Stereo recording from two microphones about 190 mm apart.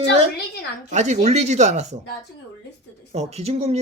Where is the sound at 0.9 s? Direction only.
40° right (ahead or behind).